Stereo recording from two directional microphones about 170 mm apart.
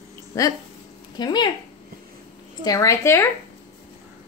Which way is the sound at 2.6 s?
20° left (ahead or behind).